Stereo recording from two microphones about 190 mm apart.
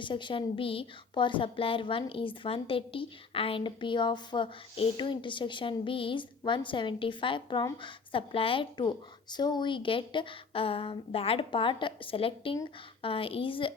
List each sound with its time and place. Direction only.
0.0 s a woman's voice: 25° left (ahead or behind)